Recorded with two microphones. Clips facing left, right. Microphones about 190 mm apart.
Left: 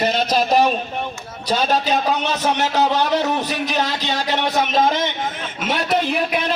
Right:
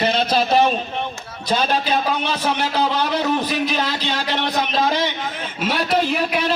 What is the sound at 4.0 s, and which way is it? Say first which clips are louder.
A man's voice: left 1 dB; 40° left (ahead or behind).